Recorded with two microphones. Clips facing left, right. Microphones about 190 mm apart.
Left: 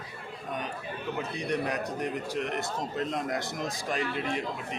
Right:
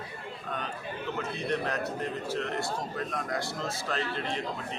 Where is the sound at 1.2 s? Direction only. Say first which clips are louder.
Left 1 dB; 15° left (ahead or behind).